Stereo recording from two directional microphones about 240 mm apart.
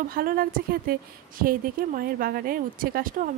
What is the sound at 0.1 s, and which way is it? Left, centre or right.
Speech, right.